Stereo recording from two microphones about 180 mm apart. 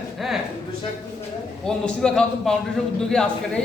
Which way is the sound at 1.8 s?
5° left (ahead or behind).